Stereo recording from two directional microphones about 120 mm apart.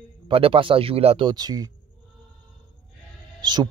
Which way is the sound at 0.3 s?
50° right (ahead or behind).